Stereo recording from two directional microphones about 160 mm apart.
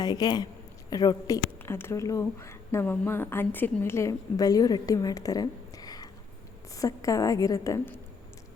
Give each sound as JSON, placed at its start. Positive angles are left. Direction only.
{"t": 0.0, "sound": "a woman's voice", "side_deg": 25}